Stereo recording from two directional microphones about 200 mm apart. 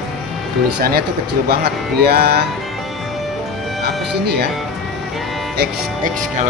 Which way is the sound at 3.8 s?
55° right (ahead or behind).